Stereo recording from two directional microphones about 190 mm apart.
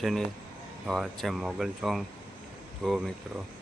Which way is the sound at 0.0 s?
Centre (ahead or behind).